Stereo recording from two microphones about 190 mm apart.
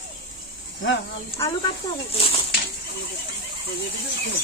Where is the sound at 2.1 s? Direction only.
30° left (ahead or behind).